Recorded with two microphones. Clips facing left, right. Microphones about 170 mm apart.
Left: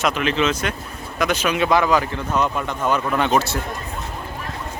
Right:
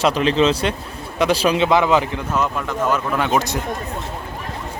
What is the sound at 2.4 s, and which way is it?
Speech, centre (ahead or behind).